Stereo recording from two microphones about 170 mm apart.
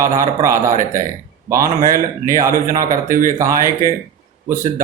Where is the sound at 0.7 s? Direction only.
50° right (ahead or behind).